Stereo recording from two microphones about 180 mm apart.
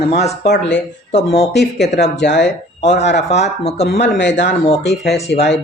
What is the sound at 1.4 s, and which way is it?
Speech, 70° left (ahead or behind).